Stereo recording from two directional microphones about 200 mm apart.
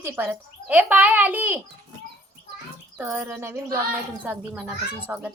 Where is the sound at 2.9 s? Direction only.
10° right (ahead or behind).